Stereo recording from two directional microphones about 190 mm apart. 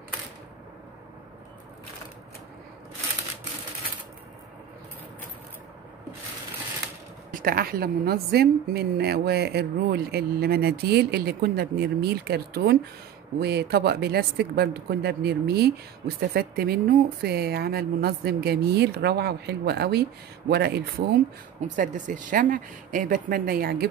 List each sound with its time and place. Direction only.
7.2 s a woman's voice: 50° right (ahead or behind)
21.5 s speech: 45° right (ahead or behind)